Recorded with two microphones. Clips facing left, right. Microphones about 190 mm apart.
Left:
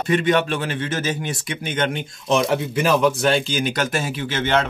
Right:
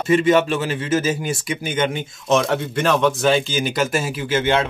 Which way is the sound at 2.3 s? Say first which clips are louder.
Right 1 dB; centre (ahead or behind).